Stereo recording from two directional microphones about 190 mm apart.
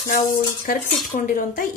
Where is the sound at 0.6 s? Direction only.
45° left (ahead or behind).